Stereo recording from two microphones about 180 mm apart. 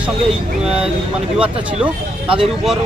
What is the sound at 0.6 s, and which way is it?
Speech, 5° right (ahead or behind).